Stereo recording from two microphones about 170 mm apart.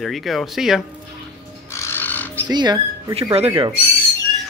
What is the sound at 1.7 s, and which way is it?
Bird, 15° left (ahead or behind).